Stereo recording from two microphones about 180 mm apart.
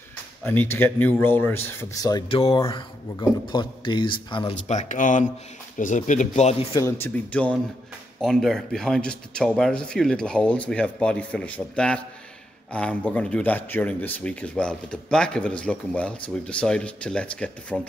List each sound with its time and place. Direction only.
0.5 s speech: 10° left (ahead or behind); by 4.6 s 25° left (ahead or behind)
4.6 s speech: 40° left (ahead or behind)
6.7 s speech: 15° left (ahead or behind)